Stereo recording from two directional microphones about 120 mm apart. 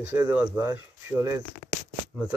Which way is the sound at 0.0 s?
15° right (ahead or behind).